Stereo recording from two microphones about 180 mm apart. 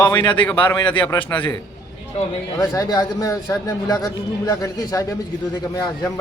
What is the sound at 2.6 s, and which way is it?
A man's voice, 20° left (ahead or behind).